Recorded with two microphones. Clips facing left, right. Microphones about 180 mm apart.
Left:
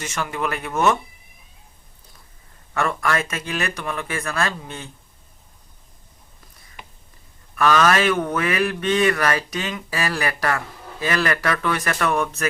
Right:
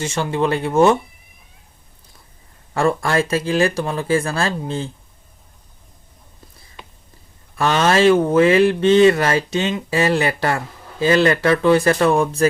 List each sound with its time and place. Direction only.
0.0 s speech: 30° right (ahead or behind)
2.7 s speech: 30° right (ahead or behind)
7.5 s speech: 25° right (ahead or behind)